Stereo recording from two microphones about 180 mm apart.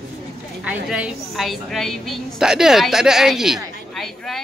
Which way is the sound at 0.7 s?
5° right (ahead or behind).